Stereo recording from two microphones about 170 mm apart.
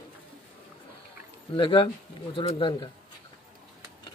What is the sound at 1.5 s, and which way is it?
Speech, 30° left (ahead or behind).